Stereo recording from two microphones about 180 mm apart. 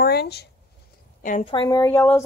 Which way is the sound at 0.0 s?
65° left (ahead or behind).